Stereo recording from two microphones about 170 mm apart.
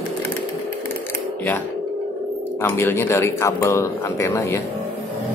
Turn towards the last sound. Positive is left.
turn(degrees=15)  # may be behind; listen again after turning